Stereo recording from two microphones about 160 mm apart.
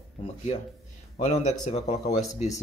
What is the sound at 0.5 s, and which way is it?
Speech, 45° left (ahead or behind).